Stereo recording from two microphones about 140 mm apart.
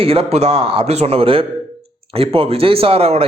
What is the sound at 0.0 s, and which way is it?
A man's voice, 45° right (ahead or behind).